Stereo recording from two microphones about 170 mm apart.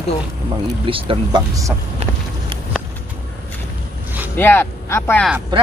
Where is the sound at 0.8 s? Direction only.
30° right (ahead or behind).